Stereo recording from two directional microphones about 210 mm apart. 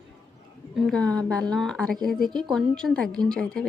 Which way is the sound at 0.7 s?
Centre (ahead or behind).